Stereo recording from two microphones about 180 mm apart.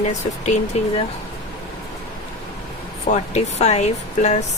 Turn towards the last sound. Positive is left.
turn(degrees=40)  # may be behind; listen again after turning